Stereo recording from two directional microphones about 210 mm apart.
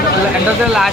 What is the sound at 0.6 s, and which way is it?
Speech, 5° right (ahead or behind).